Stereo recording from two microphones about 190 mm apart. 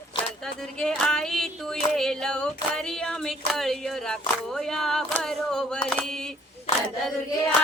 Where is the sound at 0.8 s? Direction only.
5° left (ahead or behind).